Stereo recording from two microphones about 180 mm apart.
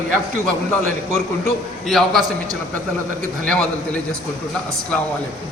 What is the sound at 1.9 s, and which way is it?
Speech, centre (ahead or behind).